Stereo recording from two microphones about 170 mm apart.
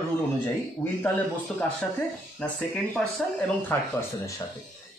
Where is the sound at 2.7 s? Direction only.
5° left (ahead or behind).